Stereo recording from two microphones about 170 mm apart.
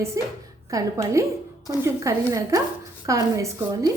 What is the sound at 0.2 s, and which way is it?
A woman's voice, 20° right (ahead or behind).